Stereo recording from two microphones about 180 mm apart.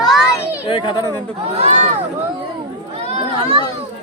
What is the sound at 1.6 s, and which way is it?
Speech, 40° right (ahead or behind).